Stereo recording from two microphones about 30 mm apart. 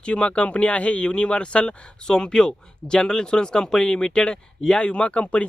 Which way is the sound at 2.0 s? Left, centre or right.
Left.